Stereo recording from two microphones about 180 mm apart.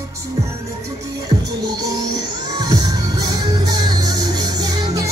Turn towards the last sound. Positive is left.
turn(degrees=-20)  # may be behind; listen again after turning